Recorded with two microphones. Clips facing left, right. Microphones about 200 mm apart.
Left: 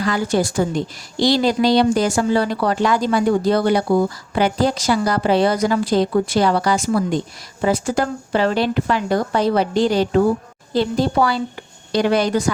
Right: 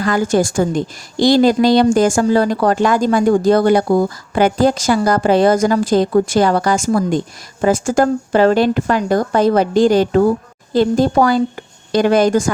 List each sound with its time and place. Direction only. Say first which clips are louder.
0.0 s a woman's voice: right 4 dB; 50° right (ahead or behind)